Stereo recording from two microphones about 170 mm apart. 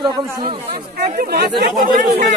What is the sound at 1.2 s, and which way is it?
Speech, 65° right (ahead or behind).